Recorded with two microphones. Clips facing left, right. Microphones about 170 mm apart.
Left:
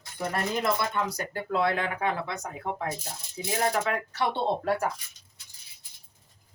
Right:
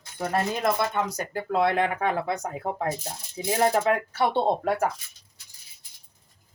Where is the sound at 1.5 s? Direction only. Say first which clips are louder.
Right 4 dB; 45° right (ahead or behind).